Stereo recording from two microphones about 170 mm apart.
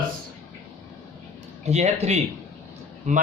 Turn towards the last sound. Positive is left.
turn(degrees=-45)  # may be behind; listen again after turning